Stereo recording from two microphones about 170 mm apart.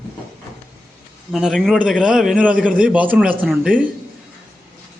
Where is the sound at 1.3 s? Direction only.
Centre (ahead or behind).